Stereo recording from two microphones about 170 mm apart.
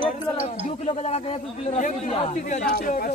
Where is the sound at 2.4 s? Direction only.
50° left (ahead or behind).